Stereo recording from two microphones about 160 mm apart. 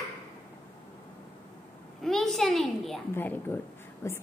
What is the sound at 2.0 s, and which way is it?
Speech, centre (ahead or behind).